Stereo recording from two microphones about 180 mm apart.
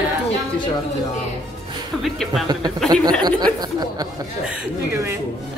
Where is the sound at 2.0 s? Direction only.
Centre (ahead or behind).